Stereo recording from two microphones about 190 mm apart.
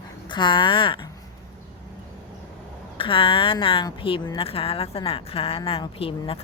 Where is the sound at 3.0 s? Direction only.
25° left (ahead or behind).